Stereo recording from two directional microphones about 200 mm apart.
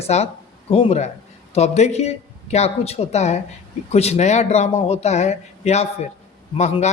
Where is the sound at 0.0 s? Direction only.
30° left (ahead or behind).